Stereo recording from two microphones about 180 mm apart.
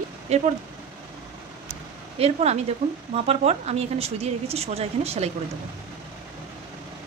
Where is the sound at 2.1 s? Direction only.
35° right (ahead or behind).